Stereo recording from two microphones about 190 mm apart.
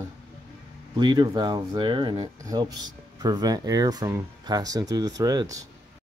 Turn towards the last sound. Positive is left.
turn(degrees=-20)  # may be behind; listen again after turning